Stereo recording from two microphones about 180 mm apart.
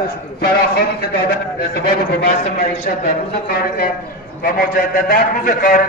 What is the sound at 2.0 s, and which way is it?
A man's voice, 55° left (ahead or behind).